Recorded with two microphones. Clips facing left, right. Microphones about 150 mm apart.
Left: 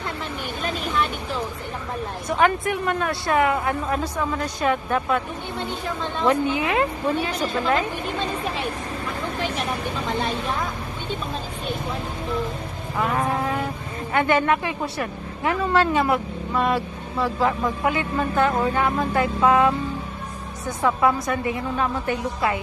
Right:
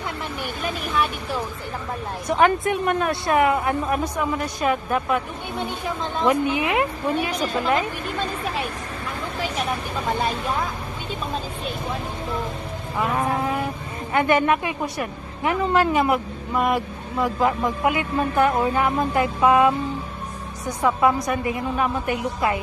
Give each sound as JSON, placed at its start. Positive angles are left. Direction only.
{"t": 2.2, "sound": "a woman's voice", "side_deg": -25}
{"t": 13.0, "sound": "a woman's voice", "side_deg": -15}
{"t": 20.8, "sound": "a woman's voice", "side_deg": -20}